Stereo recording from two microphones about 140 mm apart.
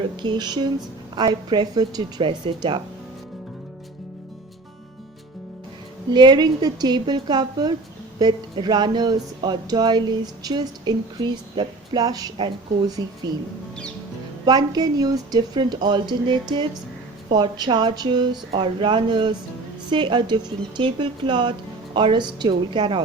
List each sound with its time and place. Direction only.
0.2 s speech: 30° right (ahead or behind)
6.1 s speech: 30° right (ahead or behind)
14.4 s speech: 30° right (ahead or behind)